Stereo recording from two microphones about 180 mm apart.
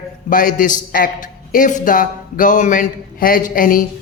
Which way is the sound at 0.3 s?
50° left (ahead or behind).